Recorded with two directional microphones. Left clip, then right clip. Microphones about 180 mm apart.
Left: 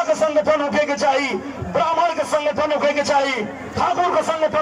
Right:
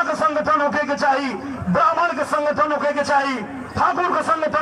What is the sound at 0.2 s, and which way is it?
Music, 15° left (ahead or behind).